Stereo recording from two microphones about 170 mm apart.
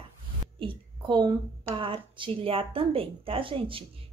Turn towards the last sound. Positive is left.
turn(degrees=-30)  # may be behind; listen again after turning